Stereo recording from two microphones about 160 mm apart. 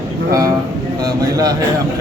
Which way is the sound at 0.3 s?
20° right (ahead or behind).